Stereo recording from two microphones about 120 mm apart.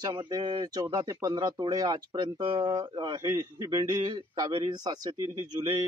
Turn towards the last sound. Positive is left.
turn(degrees=-35)  # may be behind; listen again after turning